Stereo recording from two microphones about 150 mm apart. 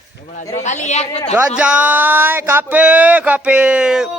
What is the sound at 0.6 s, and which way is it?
Speech, 50° left (ahead or behind).